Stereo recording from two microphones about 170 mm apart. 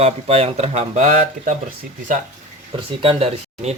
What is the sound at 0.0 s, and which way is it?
Speech, 35° right (ahead or behind).